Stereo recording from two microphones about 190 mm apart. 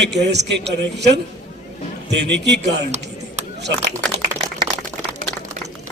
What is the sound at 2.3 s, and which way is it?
Speech, 65° right (ahead or behind).